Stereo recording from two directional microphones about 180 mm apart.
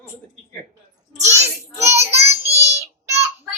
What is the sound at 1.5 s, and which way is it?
Child singing, 15° right (ahead or behind).